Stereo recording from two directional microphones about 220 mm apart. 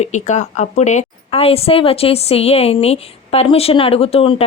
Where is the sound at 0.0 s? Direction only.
30° left (ahead or behind).